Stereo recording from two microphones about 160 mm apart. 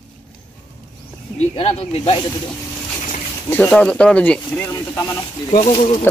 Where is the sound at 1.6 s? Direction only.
40° left (ahead or behind).